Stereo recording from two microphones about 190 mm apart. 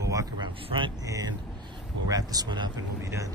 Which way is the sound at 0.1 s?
15° right (ahead or behind).